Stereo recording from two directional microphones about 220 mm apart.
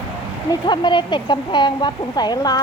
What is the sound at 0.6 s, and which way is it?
Speech, 20° left (ahead or behind).